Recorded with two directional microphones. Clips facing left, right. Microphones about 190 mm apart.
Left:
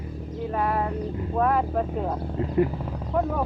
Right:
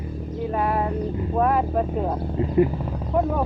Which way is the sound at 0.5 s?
15° right (ahead or behind).